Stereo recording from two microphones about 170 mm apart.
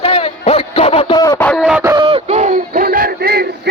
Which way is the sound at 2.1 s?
35° right (ahead or behind).